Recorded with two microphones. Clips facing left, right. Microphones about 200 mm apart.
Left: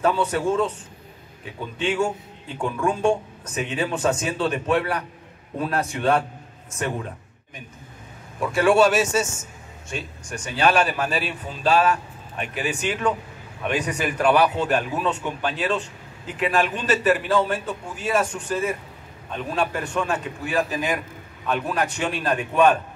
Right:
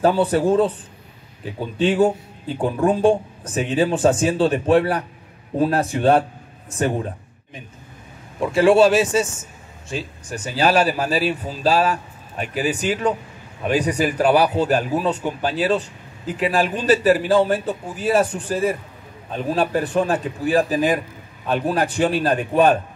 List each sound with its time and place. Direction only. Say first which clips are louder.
0.0 s a man's voice: right 5 dB; 35° right (ahead or behind)
8.4 s a man's voice: right 4 dB; 30° right (ahead or behind)